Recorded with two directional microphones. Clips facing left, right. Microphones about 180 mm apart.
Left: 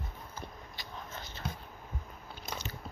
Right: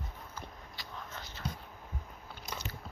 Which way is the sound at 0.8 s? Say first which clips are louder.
Left 1 dB; 20° left (ahead or behind).